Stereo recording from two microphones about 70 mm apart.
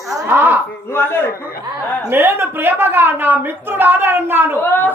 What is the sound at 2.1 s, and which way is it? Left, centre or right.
A woman's voice, right.